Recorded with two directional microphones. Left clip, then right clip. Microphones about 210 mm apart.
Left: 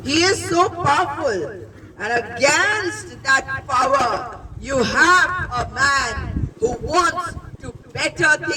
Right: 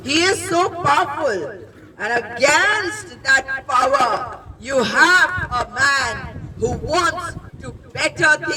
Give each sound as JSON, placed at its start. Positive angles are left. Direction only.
{"t": 0.0, "sound": "a man's voice", "side_deg": -25}